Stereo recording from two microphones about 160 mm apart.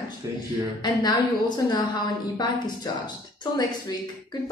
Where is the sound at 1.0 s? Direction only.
25° left (ahead or behind).